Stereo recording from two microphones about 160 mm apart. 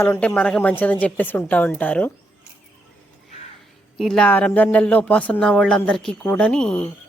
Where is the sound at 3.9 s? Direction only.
5° left (ahead or behind).